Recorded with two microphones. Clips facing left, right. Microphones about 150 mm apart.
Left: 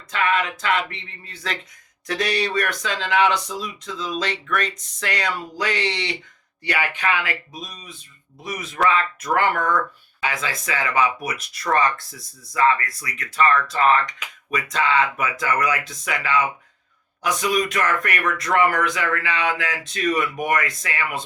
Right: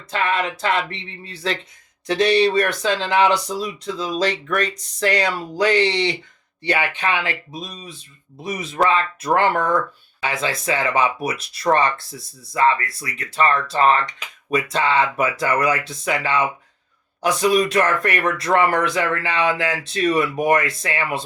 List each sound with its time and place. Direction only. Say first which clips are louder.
0.1 s speech: even; 30° right (ahead or behind)